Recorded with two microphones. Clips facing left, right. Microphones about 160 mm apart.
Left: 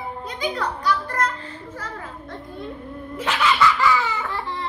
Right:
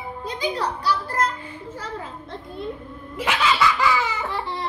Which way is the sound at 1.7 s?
30° right (ahead or behind).